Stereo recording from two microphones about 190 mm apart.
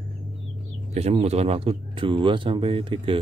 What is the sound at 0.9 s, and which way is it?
A man's voice, 35° right (ahead or behind).